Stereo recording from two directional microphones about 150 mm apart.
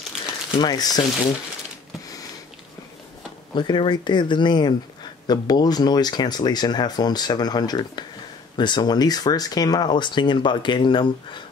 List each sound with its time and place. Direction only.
0.6 s speech: 25° left (ahead or behind)
3.5 s speech: 30° left (ahead or behind)